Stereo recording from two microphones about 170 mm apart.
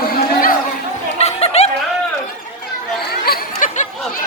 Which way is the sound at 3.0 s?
65° left (ahead or behind).